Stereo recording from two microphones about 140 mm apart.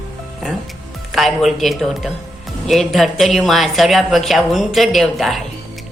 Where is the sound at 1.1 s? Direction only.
Centre (ahead or behind).